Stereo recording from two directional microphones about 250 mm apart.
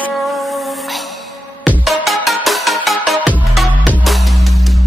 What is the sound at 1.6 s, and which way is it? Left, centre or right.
Music, centre.